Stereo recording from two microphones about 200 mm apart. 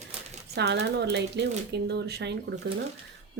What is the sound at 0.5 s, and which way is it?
Speech, 55° right (ahead or behind).